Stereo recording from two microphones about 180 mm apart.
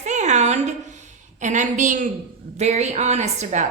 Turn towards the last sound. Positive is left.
turn(degrees=-40)  # may be behind; listen again after turning